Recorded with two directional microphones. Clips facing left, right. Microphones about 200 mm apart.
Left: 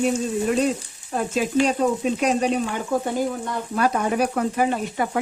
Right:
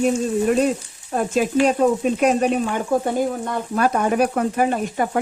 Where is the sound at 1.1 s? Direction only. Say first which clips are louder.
Right 2 dB; 50° right (ahead or behind).